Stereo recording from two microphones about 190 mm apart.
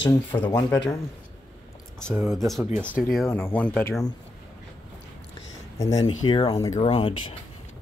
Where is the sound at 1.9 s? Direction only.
5° left (ahead or behind).